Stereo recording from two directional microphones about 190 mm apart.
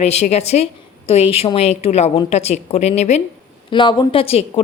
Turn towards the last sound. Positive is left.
turn(degrees=30)  # may be behind; listen again after turning